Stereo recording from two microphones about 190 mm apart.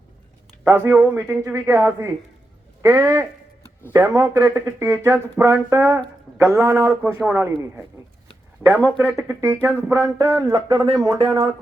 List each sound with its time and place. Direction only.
0.6 s speech: 10° right (ahead or behind)
2.8 s a sound: 10° right (ahead or behind)
3.9 s speech: 15° right (ahead or behind)
8.6 s speech: 10° right (ahead or behind)